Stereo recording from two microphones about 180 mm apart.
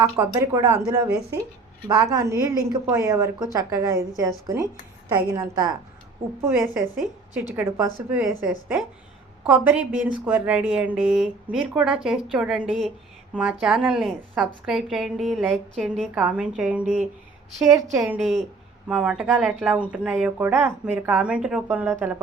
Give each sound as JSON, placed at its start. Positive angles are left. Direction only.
{"t": 0.0, "sound": "a woman's voice", "side_deg": -15}
{"t": 9.4, "sound": "a woman's voice", "side_deg": -5}
{"t": 18.2, "sound": "a woman's voice", "side_deg": 0}